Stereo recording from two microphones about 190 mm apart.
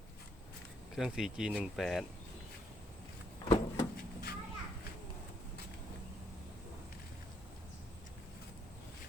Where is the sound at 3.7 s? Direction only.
50° left (ahead or behind).